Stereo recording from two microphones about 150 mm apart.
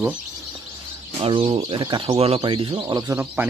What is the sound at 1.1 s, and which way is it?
Speech, 35° right (ahead or behind).